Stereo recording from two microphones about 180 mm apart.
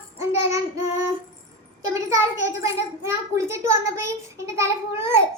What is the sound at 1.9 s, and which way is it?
A child's voice, 15° right (ahead or behind).